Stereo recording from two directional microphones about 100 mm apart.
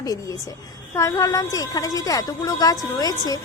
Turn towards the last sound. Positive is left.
turn(degrees=40)  # may be behind; listen again after turning